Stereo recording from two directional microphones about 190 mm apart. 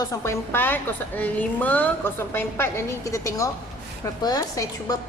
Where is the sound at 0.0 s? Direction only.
15° left (ahead or behind).